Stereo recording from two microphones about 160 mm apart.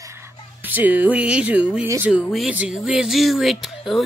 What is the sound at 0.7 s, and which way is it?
Speech, 10° right (ahead or behind).